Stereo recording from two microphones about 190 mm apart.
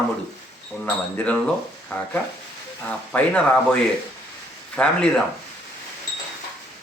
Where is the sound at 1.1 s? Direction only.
5° left (ahead or behind).